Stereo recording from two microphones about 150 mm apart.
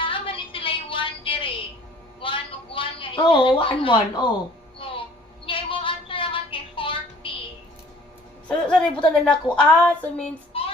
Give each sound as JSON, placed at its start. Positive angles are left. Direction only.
{"t": 0.0, "sound": "music", "side_deg": 35}
{"t": 2.2, "sound": "a sound", "side_deg": 35}
{"t": 8.4, "sound": "a woman's voice", "side_deg": 5}
{"t": 10.5, "sound": "child singing", "side_deg": 40}